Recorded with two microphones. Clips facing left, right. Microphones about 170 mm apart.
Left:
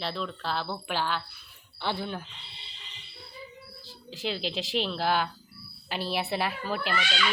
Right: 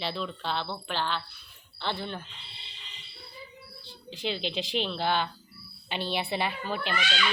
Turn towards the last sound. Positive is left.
turn(degrees=5)  # may be behind; listen again after turning